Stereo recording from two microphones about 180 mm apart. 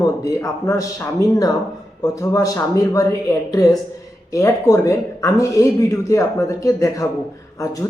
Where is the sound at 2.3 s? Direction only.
20° left (ahead or behind).